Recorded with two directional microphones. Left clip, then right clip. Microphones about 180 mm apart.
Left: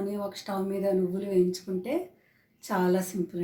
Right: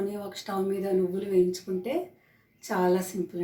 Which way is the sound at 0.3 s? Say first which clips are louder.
Right 2 dB; 15° left (ahead or behind).